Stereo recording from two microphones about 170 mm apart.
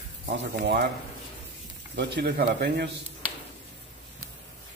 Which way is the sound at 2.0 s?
70° right (ahead or behind).